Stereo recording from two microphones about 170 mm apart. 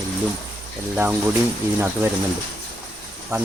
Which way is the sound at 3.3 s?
15° right (ahead or behind).